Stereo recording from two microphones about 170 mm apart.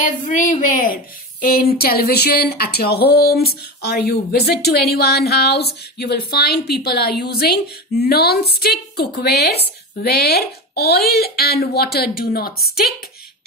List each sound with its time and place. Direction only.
0.0 s a woman's voice: 50° left (ahead or behind); by 12.9 s 65° left (ahead or behind)